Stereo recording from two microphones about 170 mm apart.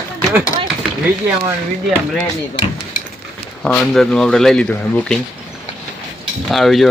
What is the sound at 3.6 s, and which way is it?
Speech, 5° left (ahead or behind).